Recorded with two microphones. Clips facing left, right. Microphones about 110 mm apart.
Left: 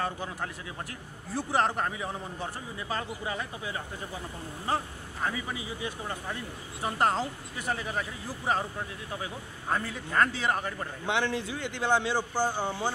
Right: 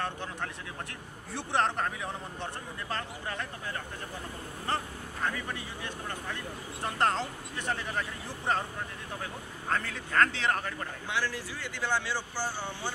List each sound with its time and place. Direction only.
0.0 s a man's voice: 5° left (ahead or behind)
11.1 s speech: 20° left (ahead or behind)
12.2 s speech: 45° left (ahead or behind)